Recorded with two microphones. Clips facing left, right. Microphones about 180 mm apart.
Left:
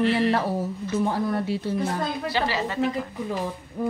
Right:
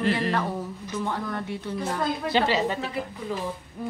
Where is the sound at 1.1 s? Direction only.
30° left (ahead or behind).